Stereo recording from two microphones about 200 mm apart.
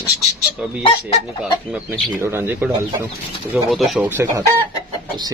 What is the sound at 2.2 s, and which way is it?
Speech, 10° right (ahead or behind).